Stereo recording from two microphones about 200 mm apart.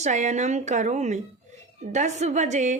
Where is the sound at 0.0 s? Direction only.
35° right (ahead or behind).